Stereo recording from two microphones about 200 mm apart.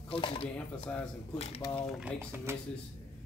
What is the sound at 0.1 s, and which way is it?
Speech, 25° left (ahead or behind).